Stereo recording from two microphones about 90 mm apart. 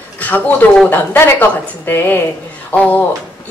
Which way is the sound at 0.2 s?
20° left (ahead or behind).